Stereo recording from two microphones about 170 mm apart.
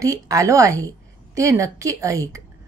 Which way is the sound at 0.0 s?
20° right (ahead or behind).